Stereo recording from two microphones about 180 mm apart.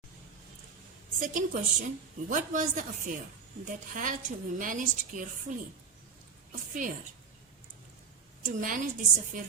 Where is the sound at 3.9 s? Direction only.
45° right (ahead or behind).